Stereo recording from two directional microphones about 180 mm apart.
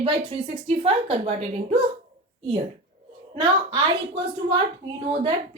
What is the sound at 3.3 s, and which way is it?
A woman's voice, 25° right (ahead or behind).